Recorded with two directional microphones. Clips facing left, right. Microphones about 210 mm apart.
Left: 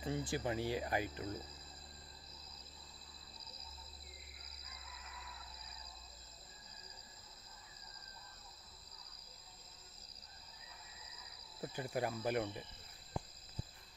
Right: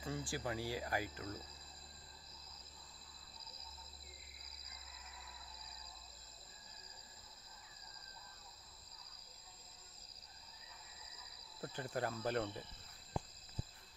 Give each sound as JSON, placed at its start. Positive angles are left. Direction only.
{"t": 0.0, "sound": "speech", "side_deg": 20}
{"t": 11.6, "sound": "speech", "side_deg": 10}